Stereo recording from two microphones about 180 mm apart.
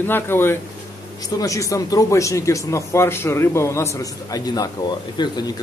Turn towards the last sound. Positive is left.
turn(degrees=25)  # may be behind; listen again after turning